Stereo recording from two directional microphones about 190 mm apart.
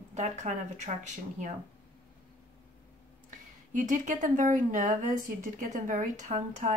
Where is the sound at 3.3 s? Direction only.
45° right (ahead or behind).